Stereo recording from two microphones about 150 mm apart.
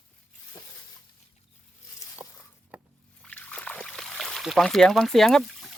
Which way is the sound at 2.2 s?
10° right (ahead or behind).